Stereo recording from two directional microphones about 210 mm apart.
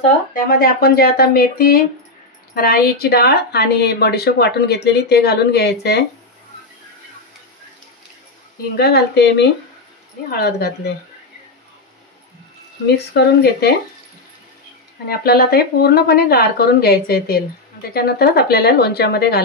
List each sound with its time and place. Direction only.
0.3 s speech: 45° left (ahead or behind)
8.7 s speech: 50° left (ahead or behind)
12.8 s speech: 50° left (ahead or behind)
15.0 s speech: 50° left (ahead or behind)